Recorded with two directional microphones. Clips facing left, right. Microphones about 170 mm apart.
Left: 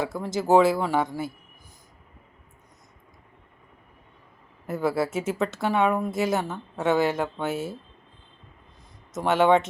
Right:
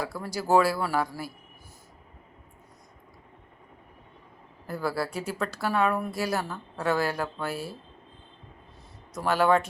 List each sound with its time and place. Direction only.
0.0 s speech: 20° left (ahead or behind)
4.6 s speech: 20° left (ahead or behind)
9.1 s speech: 20° left (ahead or behind)